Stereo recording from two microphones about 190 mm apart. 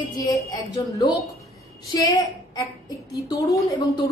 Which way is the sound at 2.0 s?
20° left (ahead or behind).